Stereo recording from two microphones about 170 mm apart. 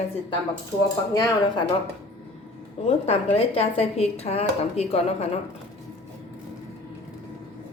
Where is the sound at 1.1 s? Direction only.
20° left (ahead or behind).